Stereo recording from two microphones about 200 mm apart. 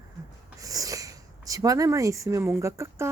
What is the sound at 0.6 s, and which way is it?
Speech, 15° right (ahead or behind).